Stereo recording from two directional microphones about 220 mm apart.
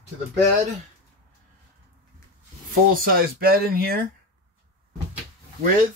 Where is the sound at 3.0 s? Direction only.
40° right (ahead or behind).